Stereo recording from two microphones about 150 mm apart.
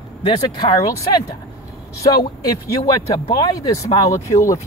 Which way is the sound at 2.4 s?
25° left (ahead or behind).